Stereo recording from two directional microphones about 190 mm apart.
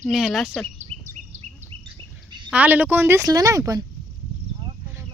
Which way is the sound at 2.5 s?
10° right (ahead or behind).